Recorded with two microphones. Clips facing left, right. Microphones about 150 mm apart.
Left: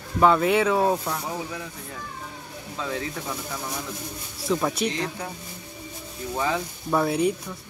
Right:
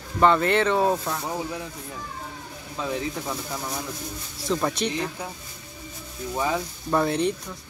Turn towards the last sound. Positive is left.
turn(degrees=5)  # may be behind; listen again after turning